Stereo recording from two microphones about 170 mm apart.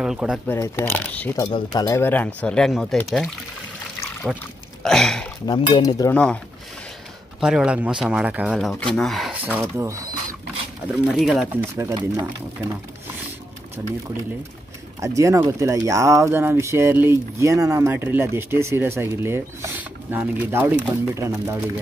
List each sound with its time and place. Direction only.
0.0 s speech: 5° right (ahead or behind)
0.5 s speech: 15° left (ahead or behind)
1.4 s speech: 20° left (ahead or behind); by 3.0 s centre (ahead or behind)
4.2 s speech: centre (ahead or behind)
5.5 s speech: 25° left (ahead or behind)
6.1 s speech: 5° left (ahead or behind)
7.3 s speech: 5° right (ahead or behind)
11.1 s speech: 5° right (ahead or behind)
13.8 s speech: 15° right (ahead or behind)
15.0 s speech: 20° right (ahead or behind)